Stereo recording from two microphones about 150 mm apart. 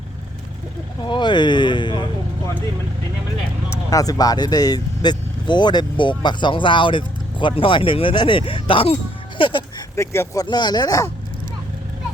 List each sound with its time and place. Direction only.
1.0 s speech: 30° left (ahead or behind)
3.7 s speech: 25° left (ahead or behind)
9.9 s speech: 15° left (ahead or behind)
10.4 s speech: 30° left (ahead or behind)